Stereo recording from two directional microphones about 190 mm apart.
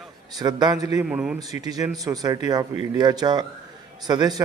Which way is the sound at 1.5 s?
20° right (ahead or behind).